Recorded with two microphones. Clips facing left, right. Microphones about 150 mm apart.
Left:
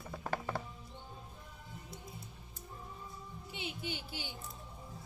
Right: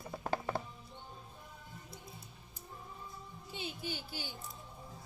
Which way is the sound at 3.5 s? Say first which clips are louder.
Even; 20° left (ahead or behind).